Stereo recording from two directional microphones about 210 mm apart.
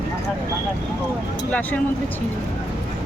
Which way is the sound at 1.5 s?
5° left (ahead or behind).